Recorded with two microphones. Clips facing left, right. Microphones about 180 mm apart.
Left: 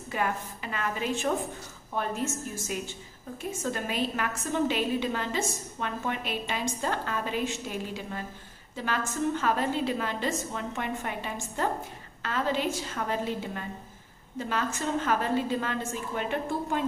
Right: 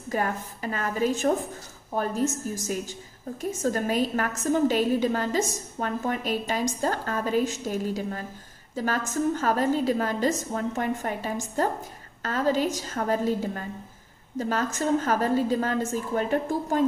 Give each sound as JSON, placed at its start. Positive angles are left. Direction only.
{"t": 0.1, "sound": "a woman's voice", "side_deg": -40}